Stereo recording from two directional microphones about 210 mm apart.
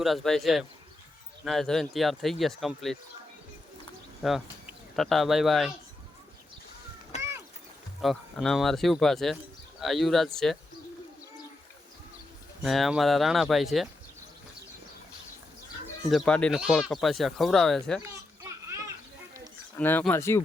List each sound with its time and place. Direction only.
0.0 s speech: centre (ahead or behind)
4.2 s speech: centre (ahead or behind)
7.2 s boat: 10° right (ahead or behind)
8.0 s speech: centre (ahead or behind)
12.6 s speech: centre (ahead or behind)
16.0 s speech: centre (ahead or behind)
18.0 s children playing: 15° right (ahead or behind)
19.7 s speech: 10° left (ahead or behind)